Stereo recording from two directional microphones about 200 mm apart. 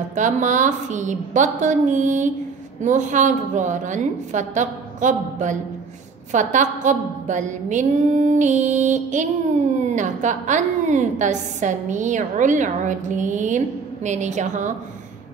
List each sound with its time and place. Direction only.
0.1 s a woman's voice: 40° right (ahead or behind)